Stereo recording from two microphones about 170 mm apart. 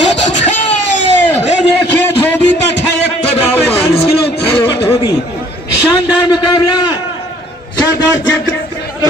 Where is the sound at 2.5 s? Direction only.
85° left.